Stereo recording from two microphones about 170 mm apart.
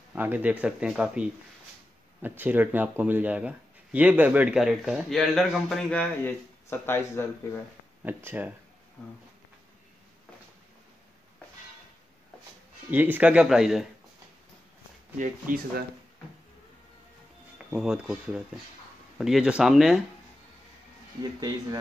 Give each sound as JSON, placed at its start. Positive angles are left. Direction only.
{"t": 0.1, "sound": "speech", "side_deg": -10}
{"t": 2.2, "sound": "speech", "side_deg": -10}
{"t": 8.0, "sound": "speech", "side_deg": -10}
{"t": 12.9, "sound": "speech", "side_deg": -10}
{"t": 15.1, "sound": "speech", "side_deg": -50}
{"t": 17.6, "sound": "speech", "side_deg": -5}
{"t": 21.2, "sound": "speech", "side_deg": -25}